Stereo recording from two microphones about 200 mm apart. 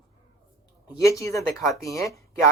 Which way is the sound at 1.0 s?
15° left (ahead or behind).